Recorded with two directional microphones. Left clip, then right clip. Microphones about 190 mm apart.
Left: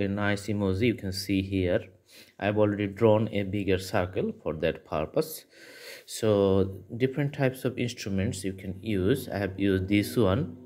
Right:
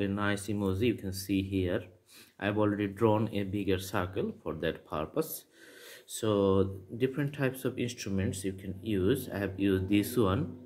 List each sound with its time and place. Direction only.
0.0 s speech: 25° left (ahead or behind)